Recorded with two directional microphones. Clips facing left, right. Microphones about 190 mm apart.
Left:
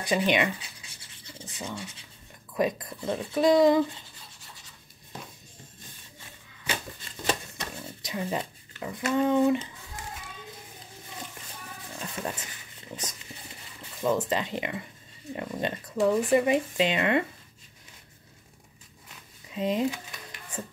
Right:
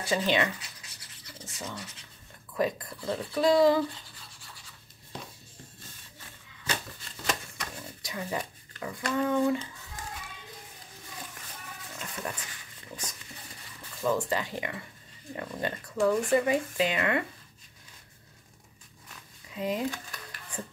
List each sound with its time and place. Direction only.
0.0 s speech: 15° left (ahead or behind)
0.6 s a sound: 25° left (ahead or behind)
1.6 s speech: 10° left (ahead or behind)
7.2 s shuffling cards: 25° left (ahead or behind)
9.1 s speech: 20° left (ahead or behind)
12.2 s stir: 20° left (ahead or behind)
14.0 s speech: 20° left (ahead or behind)
19.5 s speech: 20° left (ahead or behind)